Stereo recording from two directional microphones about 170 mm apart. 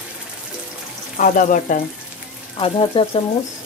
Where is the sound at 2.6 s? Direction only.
30° left (ahead or behind).